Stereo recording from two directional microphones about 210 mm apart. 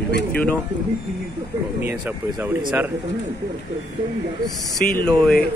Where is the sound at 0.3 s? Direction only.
10° left (ahead or behind).